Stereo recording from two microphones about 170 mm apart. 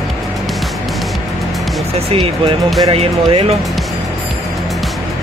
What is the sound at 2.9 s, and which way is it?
Speech, 35° right (ahead or behind).